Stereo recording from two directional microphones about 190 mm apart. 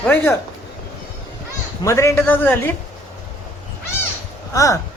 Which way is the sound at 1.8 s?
15° left (ahead or behind).